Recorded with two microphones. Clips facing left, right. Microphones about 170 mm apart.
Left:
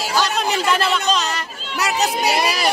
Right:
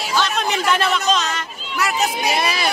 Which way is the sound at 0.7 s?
5° left (ahead or behind).